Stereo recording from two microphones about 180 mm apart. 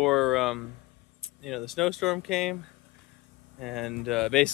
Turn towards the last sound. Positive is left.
turn(degrees=0)  # may be behind; listen again after turning